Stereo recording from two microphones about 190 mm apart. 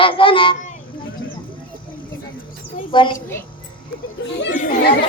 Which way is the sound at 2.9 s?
25° left (ahead or behind).